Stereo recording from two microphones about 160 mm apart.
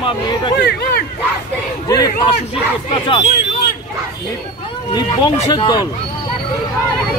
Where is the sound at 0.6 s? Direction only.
90° left.